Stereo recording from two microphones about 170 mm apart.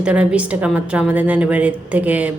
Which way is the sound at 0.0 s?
5° right (ahead or behind).